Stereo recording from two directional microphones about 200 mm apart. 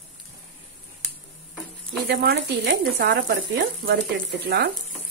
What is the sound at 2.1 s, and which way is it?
Speech, 60° right (ahead or behind).